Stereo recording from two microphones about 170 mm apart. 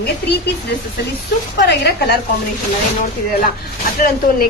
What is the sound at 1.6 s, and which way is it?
Speech, 70° left (ahead or behind).